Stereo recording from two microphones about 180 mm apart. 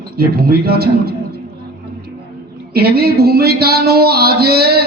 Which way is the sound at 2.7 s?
60° right (ahead or behind).